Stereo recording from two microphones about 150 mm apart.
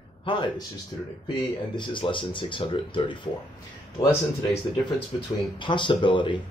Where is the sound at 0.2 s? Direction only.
30° left (ahead or behind).